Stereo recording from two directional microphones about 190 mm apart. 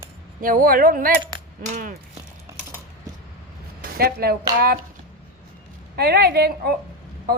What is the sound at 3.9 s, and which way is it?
Speech, 55° right (ahead or behind).